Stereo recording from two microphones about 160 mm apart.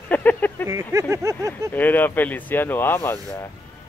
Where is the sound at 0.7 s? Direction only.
20° right (ahead or behind).